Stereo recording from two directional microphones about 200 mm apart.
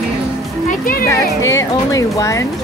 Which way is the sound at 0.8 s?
45° left (ahead or behind).